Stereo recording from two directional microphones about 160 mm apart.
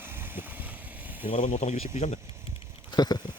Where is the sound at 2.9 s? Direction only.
25° left (ahead or behind).